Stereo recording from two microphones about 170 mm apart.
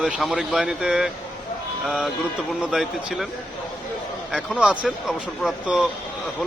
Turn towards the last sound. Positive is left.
turn(degrees=0)  # may be behind; listen again after turning